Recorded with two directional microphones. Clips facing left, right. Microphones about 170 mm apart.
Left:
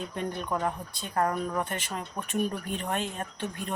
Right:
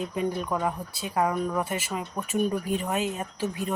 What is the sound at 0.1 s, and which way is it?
Speech, 10° right (ahead or behind).